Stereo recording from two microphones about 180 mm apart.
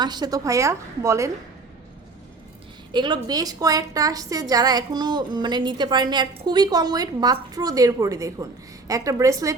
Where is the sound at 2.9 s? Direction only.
25° right (ahead or behind).